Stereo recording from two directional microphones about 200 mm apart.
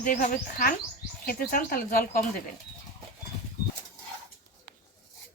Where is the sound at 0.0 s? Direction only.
40° left (ahead or behind).